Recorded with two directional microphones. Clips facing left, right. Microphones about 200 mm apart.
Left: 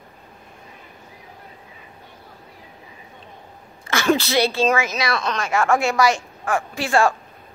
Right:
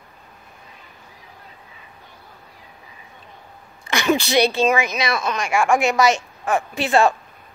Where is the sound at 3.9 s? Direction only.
15° right (ahead or behind).